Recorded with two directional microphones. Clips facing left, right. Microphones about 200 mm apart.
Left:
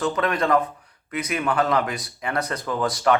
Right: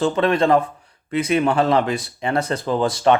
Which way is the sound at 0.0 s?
25° right (ahead or behind).